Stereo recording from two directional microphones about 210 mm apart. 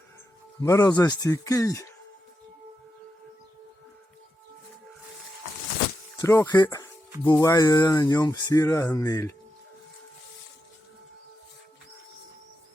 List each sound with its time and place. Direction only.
0.6 s speech: 15° left (ahead or behind)
6.1 s speech: 15° left (ahead or behind)